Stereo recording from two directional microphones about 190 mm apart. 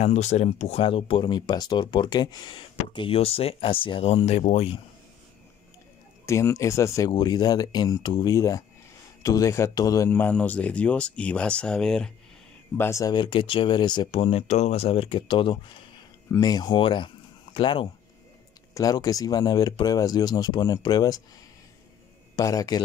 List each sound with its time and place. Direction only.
0.0 s speech: 35° left (ahead or behind)
6.2 s a man's voice: 15° left (ahead or behind)
12.7 s speech: 15° left (ahead or behind)
22.3 s a man's voice: 20° left (ahead or behind)